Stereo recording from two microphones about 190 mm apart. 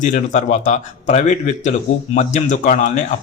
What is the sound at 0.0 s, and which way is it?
Speech, 40° left (ahead or behind).